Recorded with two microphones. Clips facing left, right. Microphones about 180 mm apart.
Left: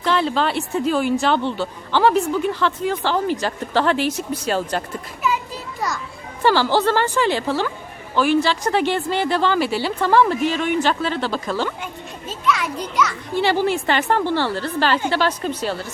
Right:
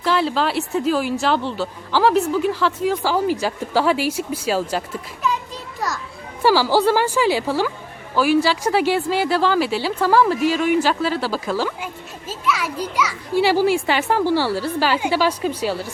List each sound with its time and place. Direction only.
0.0 s speech: 5° right (ahead or behind)
6.4 s a child's voice: 10° right (ahead or behind)